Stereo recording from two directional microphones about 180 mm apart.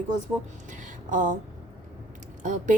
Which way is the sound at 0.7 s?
45° right (ahead or behind).